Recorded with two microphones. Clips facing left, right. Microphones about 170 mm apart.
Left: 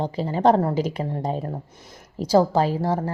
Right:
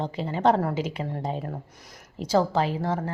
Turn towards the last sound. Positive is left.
turn(degrees=40)  # may be behind; listen again after turning